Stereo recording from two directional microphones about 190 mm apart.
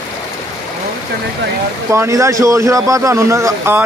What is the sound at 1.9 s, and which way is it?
A man's voice, 15° right (ahead or behind).